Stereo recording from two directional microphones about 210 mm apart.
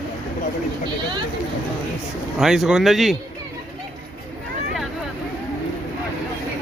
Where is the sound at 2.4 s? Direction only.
Centre (ahead or behind).